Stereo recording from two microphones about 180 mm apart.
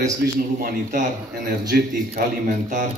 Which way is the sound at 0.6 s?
45° right (ahead or behind).